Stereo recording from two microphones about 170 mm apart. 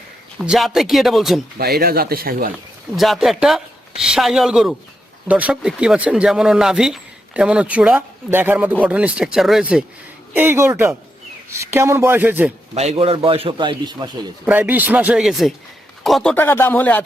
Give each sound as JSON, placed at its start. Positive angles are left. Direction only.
{"t": 0.4, "sound": "speech", "side_deg": -5}
{"t": 1.5, "sound": "speech", "side_deg": -65}
{"t": 2.9, "sound": "speech", "side_deg": 0}
{"t": 12.7, "sound": "a man's voice", "side_deg": -40}
{"t": 14.4, "sound": "a man's voice", "side_deg": -10}
{"t": 16.3, "sound": "speech", "side_deg": 10}